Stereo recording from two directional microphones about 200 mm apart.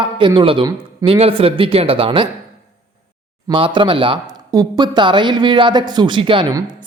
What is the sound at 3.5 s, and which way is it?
A man's voice, 25° right (ahead or behind).